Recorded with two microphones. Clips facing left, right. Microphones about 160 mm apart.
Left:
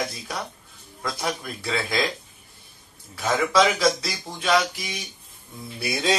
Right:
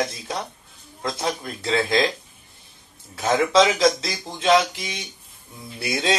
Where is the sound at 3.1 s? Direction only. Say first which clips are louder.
Right 3 dB; 20° right (ahead or behind).